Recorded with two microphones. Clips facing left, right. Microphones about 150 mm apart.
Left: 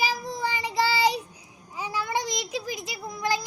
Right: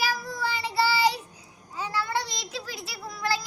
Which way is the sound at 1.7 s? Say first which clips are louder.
Even; 15° left (ahead or behind).